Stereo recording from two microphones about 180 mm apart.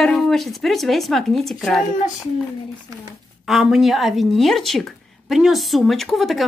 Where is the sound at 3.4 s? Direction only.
Centre (ahead or behind).